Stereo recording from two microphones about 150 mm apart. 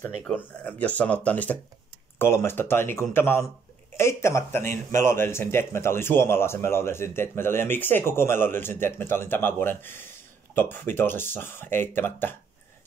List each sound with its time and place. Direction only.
0.2 s speech: 10° left (ahead or behind)